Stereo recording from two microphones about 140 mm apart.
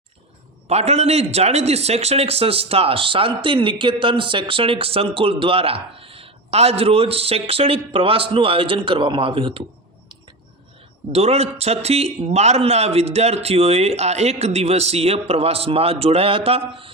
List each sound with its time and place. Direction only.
0.7 s a man's voice: 50° right (ahead or behind)
11.1 s a man's voice: 50° right (ahead or behind)